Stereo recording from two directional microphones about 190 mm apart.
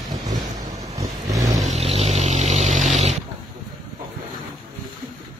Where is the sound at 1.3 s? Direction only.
20° right (ahead or behind).